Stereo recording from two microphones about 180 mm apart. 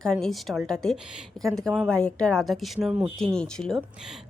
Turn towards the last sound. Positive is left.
turn(degrees=0)  # may be behind; listen again after turning